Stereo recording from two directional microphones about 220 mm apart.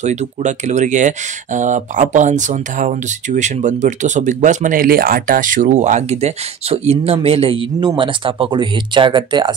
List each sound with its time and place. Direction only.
0.0 s speech: 30° right (ahead or behind)